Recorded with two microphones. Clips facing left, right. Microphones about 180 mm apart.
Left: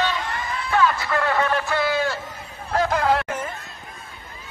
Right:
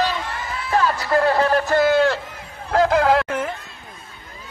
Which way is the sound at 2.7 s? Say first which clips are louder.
Right 4 dB; 90° right.